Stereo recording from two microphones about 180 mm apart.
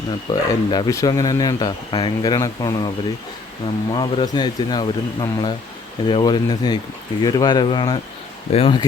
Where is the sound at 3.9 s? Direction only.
25° left (ahead or behind).